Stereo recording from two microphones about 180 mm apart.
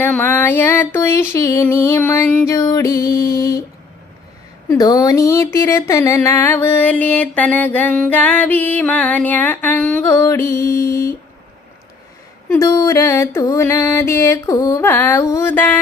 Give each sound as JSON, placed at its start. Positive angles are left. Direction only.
{"t": 0.0, "sound": "speech", "side_deg": 10}
{"t": 4.7, "sound": "speech", "side_deg": 20}
{"t": 12.5, "sound": "speech", "side_deg": 15}